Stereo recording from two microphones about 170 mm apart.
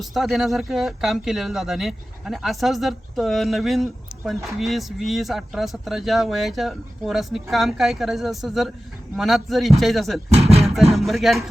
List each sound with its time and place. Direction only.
0.0 s speech: centre (ahead or behind)
10.3 s beatboxing: 35° right (ahead or behind)
10.9 s speech: centre (ahead or behind)